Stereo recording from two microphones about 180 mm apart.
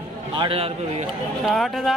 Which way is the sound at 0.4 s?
30° right (ahead or behind).